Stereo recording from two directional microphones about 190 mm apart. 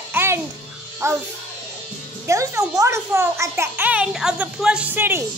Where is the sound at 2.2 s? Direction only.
15° right (ahead or behind).